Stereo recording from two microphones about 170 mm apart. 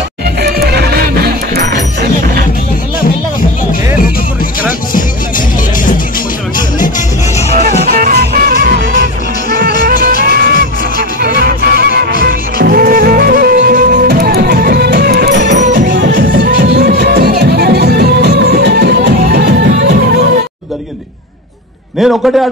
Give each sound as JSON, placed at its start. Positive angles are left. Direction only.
{"t": 0.4, "sound": "music", "side_deg": -70}
{"t": 7.9, "sound": "music", "side_deg": -60}
{"t": 9.5, "sound": "music", "side_deg": -75}
{"t": 9.8, "sound": "music", "side_deg": -55}
{"t": 21.9, "sound": "a sound", "side_deg": 0}